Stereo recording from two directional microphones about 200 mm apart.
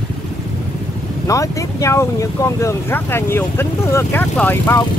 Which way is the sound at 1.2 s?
15° left (ahead or behind).